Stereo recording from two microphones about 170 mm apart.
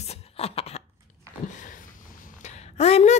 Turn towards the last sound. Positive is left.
turn(degrees=40)  # may be behind; listen again after turning